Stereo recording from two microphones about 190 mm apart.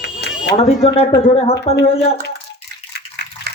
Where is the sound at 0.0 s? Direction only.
65° left (ahead or behind).